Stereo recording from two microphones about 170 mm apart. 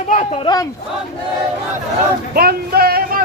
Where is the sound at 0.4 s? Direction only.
20° left (ahead or behind).